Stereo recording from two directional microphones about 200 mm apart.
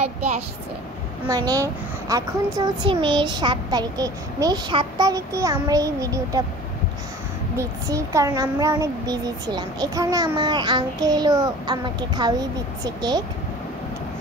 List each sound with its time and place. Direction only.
0.0 s speech: 35° right (ahead or behind)
1.2 s a child's voice: 20° right (ahead or behind)
7.5 s a child's voice: 15° right (ahead or behind)